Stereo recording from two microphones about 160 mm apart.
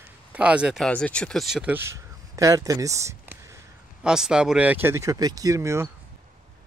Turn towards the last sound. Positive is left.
turn(degrees=-20)  # may be behind; listen again after turning